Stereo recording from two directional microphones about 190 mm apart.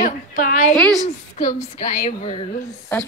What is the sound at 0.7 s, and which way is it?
Speech, 5° left (ahead or behind).